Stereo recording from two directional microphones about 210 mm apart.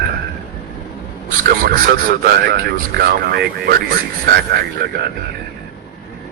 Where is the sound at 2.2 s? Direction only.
45° right (ahead or behind).